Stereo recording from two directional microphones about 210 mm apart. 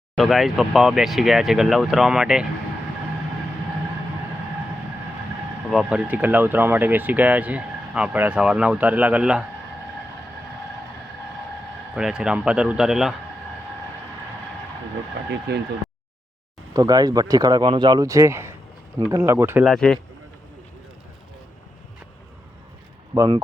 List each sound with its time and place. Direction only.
0.2 s speech: centre (ahead or behind)
5.7 s speech: 5° right (ahead or behind)
11.9 s speech: 5° right (ahead or behind)
15.5 s speech: 50° right (ahead or behind)
16.7 s speech: 20° right (ahead or behind)
19.6 s speech: 5° left (ahead or behind)
23.1 s speech: 15° right (ahead or behind)